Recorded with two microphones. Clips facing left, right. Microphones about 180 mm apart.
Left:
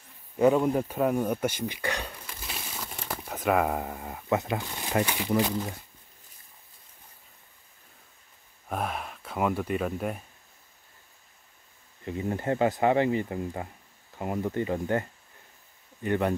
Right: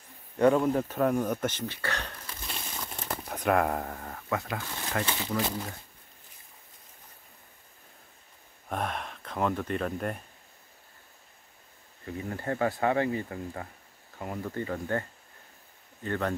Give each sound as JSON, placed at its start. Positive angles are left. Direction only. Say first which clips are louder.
{"t": 0.4, "sound": "a sound", "louder": "left 1 dB", "side_deg": 5}
{"t": 4.3, "sound": "speech", "louder": "left 5 dB", "side_deg": 20}
{"t": 8.6, "sound": "speech", "louder": "left 1 dB", "side_deg": 5}
{"t": 12.2, "sound": "speech", "louder": "left 4 dB", "side_deg": 20}